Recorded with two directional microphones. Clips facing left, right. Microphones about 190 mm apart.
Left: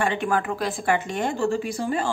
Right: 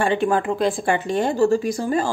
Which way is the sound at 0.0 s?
30° right (ahead or behind).